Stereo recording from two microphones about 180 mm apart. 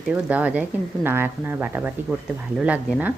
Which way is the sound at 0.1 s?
10° right (ahead or behind).